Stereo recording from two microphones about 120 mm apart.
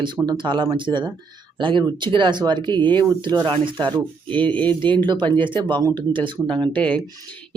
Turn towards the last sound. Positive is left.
turn(degrees=10)  # may be behind; listen again after turning